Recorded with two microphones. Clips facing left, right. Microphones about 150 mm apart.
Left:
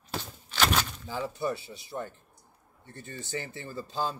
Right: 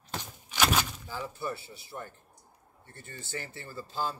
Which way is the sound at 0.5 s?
10° right (ahead or behind).